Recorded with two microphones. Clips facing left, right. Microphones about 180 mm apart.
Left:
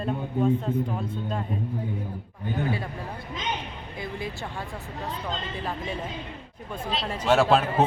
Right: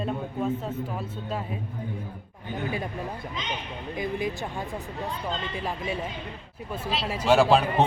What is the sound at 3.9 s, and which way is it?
Speech, 15° right (ahead or behind).